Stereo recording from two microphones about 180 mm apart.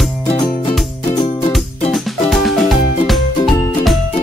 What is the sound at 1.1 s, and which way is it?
Music, 25° left (ahead or behind).